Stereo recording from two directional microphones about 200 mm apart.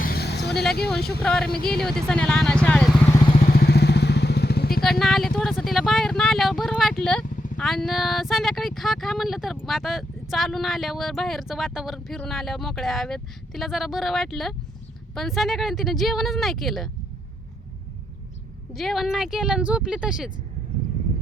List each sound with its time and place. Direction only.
0.0 s vehicle: 50° left (ahead or behind)
1.2 s speech: 5° left (ahead or behind)
3.4 s vehicle: 50° left (ahead or behind)
4.8 s speech: centre (ahead or behind)
18.7 s speech: centre (ahead or behind)